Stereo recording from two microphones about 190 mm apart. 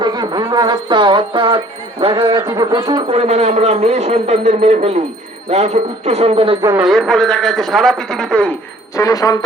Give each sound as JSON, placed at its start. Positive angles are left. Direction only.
{"t": 0.0, "sound": "music", "side_deg": -20}
{"t": 2.2, "sound": "speech", "side_deg": -20}
{"t": 6.7, "sound": "speech", "side_deg": 0}
{"t": 9.0, "sound": "speech", "side_deg": 15}